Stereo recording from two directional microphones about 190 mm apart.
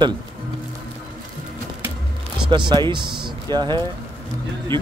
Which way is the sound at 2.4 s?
25° right (ahead or behind).